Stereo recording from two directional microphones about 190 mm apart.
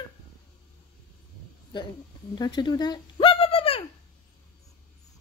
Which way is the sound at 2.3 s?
20° left (ahead or behind).